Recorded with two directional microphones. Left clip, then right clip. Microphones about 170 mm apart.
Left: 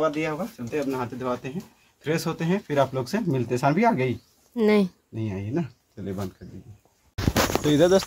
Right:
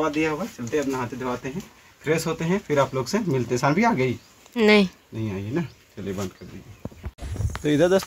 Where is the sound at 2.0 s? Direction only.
30° left (ahead or behind).